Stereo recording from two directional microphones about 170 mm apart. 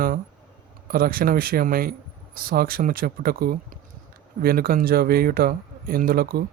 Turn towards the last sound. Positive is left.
turn(degrees=-60)  # may be behind; listen again after turning